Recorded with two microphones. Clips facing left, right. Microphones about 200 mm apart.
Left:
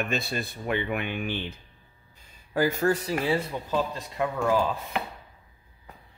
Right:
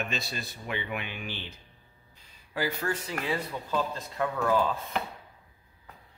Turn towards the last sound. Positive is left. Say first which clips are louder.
# left 2 dB
turn(degrees=15)  # may be behind; listen again after turning